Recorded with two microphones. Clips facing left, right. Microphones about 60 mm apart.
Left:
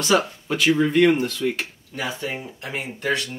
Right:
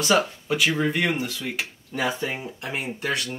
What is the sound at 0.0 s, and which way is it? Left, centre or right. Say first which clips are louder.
Speech: left 1 dB; centre.